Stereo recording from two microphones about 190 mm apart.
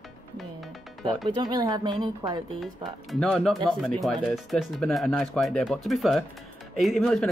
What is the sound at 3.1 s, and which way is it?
Speech, 5° left (ahead or behind).